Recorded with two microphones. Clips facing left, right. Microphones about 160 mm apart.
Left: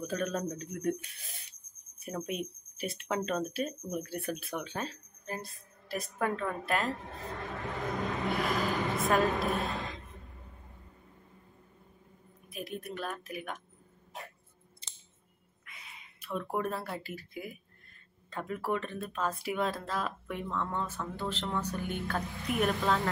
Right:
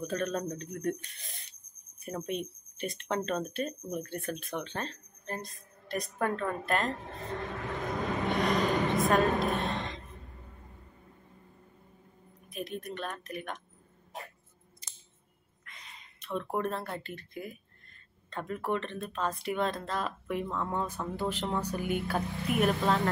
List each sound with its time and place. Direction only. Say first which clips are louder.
0.0 s speech: right 1 dB; 5° left (ahead or behind)
8.4 s a sound: right 5 dB; 5° left (ahead or behind)
12.4 s speech: right 2 dB; 5° left (ahead or behind)
14.8 s scissors: right 1 dB; 30° left (ahead or behind)
15.6 s speech: even; 5° left (ahead or behind)
20.4 s speech: right 1 dB; 10° right (ahead or behind)